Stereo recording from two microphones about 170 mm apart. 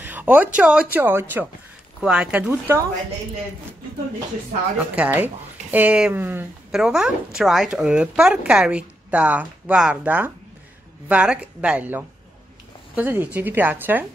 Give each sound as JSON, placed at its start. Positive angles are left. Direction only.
{"t": 0.0, "sound": "a woman's voice", "side_deg": -10}
{"t": 4.7, "sound": "a woman's voice", "side_deg": -10}